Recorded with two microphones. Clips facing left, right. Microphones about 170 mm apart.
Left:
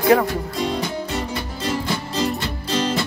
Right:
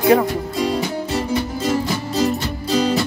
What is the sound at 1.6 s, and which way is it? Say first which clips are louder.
Music: right 4 dB; 45° right (ahead or behind).